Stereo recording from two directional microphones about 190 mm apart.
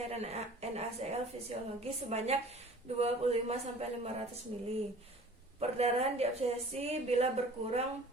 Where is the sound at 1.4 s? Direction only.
30° right (ahead or behind).